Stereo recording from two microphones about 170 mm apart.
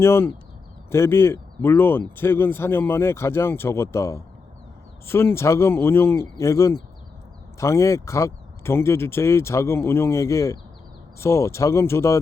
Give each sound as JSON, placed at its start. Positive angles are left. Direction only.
{"t": 0.0, "sound": "speech", "side_deg": 15}